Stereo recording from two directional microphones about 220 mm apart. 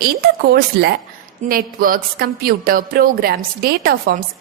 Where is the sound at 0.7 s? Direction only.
45° right (ahead or behind).